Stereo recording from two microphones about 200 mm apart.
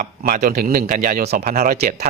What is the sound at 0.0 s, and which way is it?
Speech, 40° right (ahead or behind).